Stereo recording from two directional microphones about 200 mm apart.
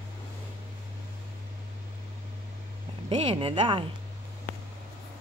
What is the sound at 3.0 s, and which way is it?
Speech, 25° right (ahead or behind).